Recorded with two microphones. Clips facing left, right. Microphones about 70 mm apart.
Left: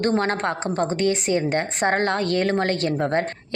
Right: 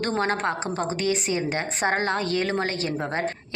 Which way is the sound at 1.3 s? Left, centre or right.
Left.